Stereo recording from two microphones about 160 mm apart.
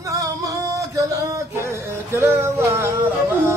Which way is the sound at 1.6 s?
15° right (ahead or behind).